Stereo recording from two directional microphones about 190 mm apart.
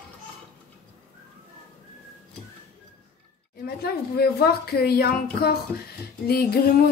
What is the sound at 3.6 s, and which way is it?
A woman's voice, 55° left (ahead or behind).